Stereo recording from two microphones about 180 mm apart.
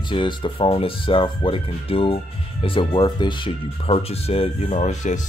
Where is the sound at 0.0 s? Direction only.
25° left (ahead or behind).